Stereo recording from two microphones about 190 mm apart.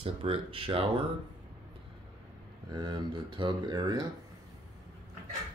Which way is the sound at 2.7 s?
20° right (ahead or behind).